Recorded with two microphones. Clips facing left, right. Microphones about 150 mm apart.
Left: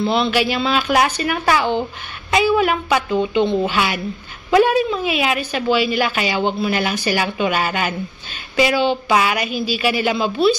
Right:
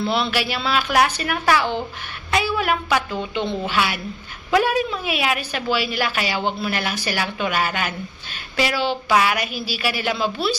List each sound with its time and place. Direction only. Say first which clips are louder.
0.0 s a woman's voice: left 4 dB; 5° right (ahead or behind)